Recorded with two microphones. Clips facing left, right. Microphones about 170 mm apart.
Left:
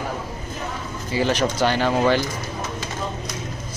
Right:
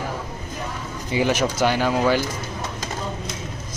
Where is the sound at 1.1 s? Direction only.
10° right (ahead or behind).